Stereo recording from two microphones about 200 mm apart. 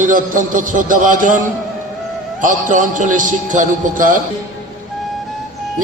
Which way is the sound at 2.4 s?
40° right (ahead or behind).